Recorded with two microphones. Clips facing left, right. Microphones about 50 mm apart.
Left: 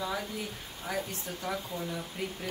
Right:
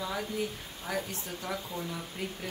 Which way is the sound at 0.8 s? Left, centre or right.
Centre.